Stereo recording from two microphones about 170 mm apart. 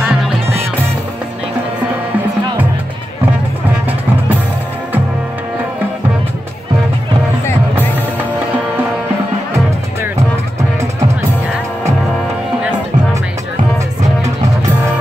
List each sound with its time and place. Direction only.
0.0 s music: centre (ahead or behind)
10.8 s music: 15° right (ahead or behind)